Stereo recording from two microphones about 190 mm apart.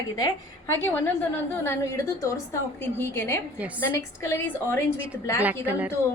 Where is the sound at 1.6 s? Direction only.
15° left (ahead or behind).